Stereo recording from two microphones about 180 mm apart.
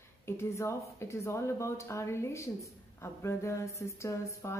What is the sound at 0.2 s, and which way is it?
A woman's voice, 15° left (ahead or behind).